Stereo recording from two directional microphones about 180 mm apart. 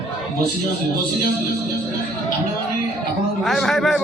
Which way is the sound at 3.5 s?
Centre (ahead or behind).